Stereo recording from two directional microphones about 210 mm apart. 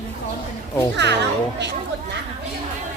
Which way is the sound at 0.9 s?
55° right (ahead or behind).